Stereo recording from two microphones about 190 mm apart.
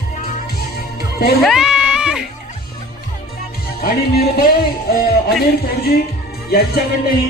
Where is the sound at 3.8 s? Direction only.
50° left (ahead or behind).